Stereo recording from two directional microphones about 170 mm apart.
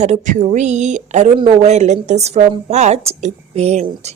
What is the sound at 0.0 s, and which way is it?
A woman's voice, 45° right (ahead or behind).